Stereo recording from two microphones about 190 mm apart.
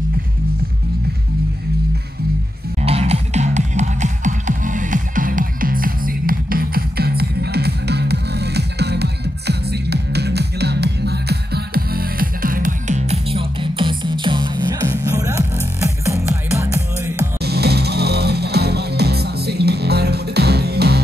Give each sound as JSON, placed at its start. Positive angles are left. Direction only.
{"t": 2.8, "sound": "music", "side_deg": -35}
{"t": 17.4, "sound": "music", "side_deg": -55}